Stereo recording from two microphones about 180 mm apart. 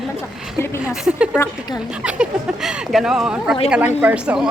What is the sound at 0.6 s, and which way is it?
Speech, 15° left (ahead or behind).